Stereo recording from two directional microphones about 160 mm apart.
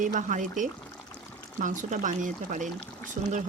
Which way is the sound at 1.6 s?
55° right (ahead or behind).